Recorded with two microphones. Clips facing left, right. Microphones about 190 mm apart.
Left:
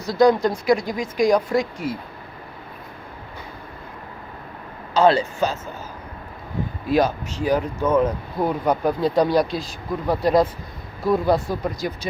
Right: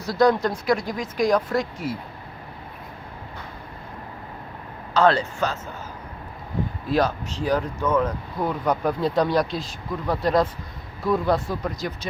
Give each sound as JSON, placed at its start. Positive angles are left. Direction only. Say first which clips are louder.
{"t": 0.0, "sound": "speech", "louder": "left 3 dB", "side_deg": 0}
{"t": 4.9, "sound": "speech", "louder": "left 2 dB", "side_deg": 10}
{"t": 6.9, "sound": "speech", "louder": "left 3 dB", "side_deg": 5}
{"t": 7.9, "sound": "speech", "louder": "left 4 dB", "side_deg": 25}
{"t": 8.4, "sound": "speech", "louder": "left 3 dB", "side_deg": 5}